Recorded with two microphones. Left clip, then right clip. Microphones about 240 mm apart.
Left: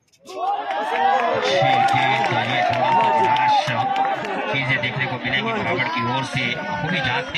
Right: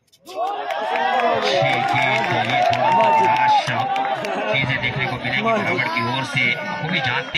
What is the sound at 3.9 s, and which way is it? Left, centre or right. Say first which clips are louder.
Music: even; right.